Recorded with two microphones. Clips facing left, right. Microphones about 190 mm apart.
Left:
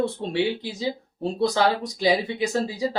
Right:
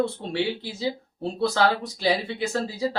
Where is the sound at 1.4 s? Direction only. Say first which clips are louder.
Left 1 dB; 15° left (ahead or behind).